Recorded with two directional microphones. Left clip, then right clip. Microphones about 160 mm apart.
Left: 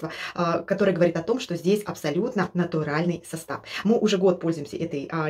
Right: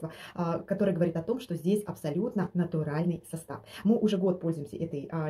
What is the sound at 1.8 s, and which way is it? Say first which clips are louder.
Speech: left 6 dB; 30° left (ahead or behind).